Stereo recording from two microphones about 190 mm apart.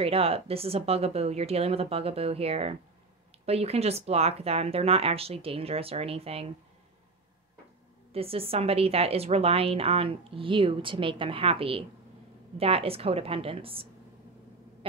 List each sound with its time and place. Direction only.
0.0 s speech: 30° right (ahead or behind)
8.1 s a woman's voice: 30° right (ahead or behind)